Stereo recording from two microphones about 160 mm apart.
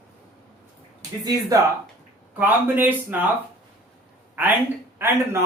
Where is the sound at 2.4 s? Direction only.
10° right (ahead or behind).